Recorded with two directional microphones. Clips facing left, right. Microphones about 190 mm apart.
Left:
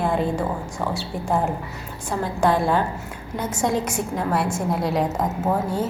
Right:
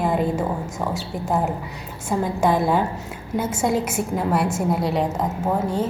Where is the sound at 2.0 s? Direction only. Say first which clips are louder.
Right 1 dB; 5° right (ahead or behind).